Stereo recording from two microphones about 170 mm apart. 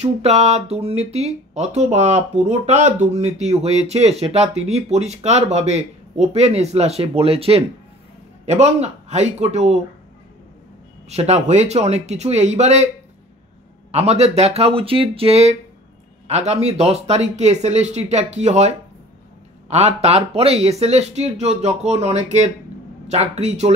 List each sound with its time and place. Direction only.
0.0 s speech: 40° right (ahead or behind)
11.1 s speech: 40° right (ahead or behind)
13.9 s speech: 40° right (ahead or behind)